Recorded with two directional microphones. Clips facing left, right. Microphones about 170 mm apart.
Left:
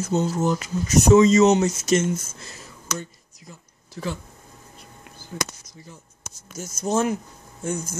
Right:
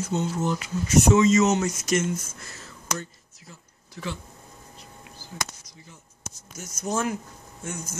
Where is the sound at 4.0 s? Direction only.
35° left (ahead or behind).